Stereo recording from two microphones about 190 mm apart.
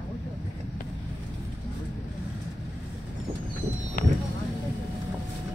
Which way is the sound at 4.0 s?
45° left (ahead or behind).